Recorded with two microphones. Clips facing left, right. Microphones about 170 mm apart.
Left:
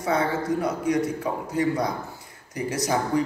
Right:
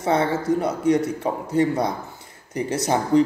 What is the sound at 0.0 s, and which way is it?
Speech, 25° right (ahead or behind).